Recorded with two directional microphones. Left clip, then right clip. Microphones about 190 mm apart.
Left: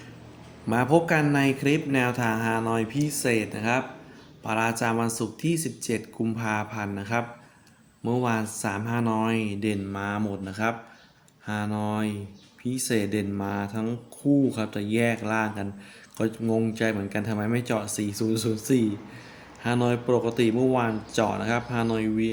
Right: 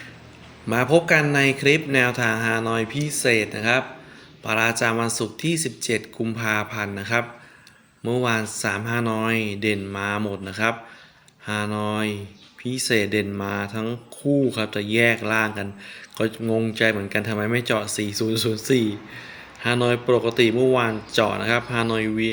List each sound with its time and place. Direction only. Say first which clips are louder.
0.7 s speech: right 4 dB; 15° right (ahead or behind)